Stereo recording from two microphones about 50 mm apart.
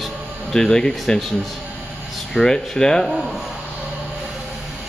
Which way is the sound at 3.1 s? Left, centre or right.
Centre.